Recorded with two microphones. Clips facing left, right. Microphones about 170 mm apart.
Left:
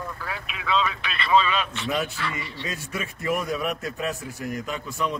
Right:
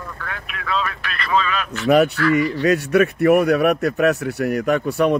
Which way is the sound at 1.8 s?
70° right (ahead or behind).